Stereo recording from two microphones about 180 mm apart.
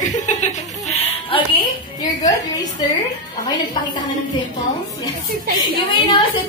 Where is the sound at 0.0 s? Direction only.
45° left (ahead or behind).